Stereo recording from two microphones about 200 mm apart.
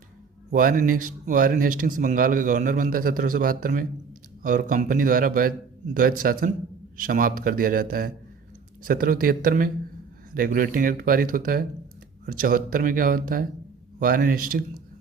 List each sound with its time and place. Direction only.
0.5 s speech: 45° right (ahead or behind)